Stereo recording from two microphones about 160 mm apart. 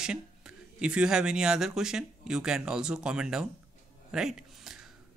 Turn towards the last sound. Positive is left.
turn(degrees=-5)  # may be behind; listen again after turning